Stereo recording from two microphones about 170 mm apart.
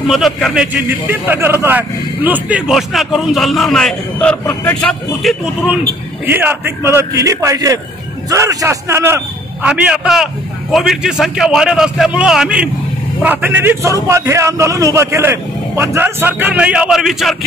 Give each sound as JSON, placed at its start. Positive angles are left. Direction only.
{"t": 0.1, "sound": "a man's voice", "side_deg": 0}
{"t": 6.2, "sound": "a man's voice", "side_deg": -10}